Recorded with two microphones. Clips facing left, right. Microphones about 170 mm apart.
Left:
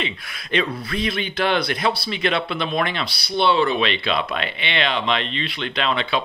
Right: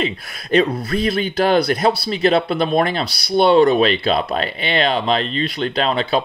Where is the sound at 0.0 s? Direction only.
40° right (ahead or behind).